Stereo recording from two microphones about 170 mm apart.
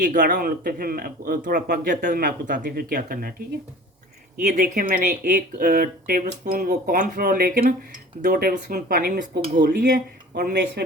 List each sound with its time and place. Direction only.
0.0 s speech: 50° right (ahead or behind)
4.4 s speech: 55° right (ahead or behind)